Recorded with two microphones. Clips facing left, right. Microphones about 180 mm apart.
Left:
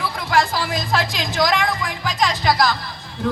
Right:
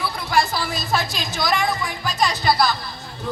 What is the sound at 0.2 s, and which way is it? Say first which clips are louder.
A woman's voice: left 2 dB; 90° left.